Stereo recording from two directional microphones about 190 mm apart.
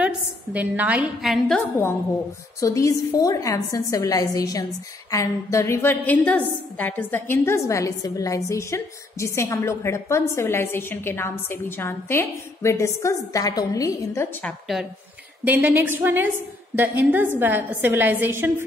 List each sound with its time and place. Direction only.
0.0 s a woman's voice: 10° right (ahead or behind)
2.6 s a woman's voice: 15° left (ahead or behind)
15.4 s a woman's voice: 10° right (ahead or behind)